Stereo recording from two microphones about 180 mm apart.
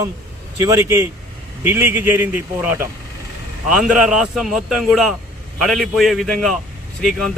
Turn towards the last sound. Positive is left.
turn(degrees=0)  # may be behind; listen again after turning